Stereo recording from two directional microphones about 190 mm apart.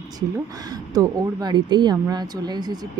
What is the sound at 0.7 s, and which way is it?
Speech, 20° right (ahead or behind).